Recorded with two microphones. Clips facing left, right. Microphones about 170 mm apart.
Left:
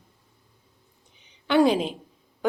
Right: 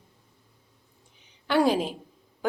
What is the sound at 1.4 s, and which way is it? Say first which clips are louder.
Speech: left 3 dB; 5° right (ahead or behind).